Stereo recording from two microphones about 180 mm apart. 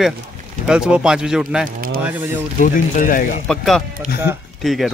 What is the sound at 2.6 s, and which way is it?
Speech, 50° left (ahead or behind).